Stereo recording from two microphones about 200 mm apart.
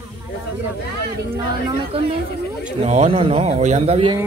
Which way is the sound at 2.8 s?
30° right (ahead or behind).